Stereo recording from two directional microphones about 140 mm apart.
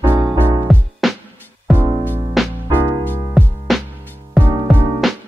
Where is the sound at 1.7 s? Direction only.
15° left (ahead or behind).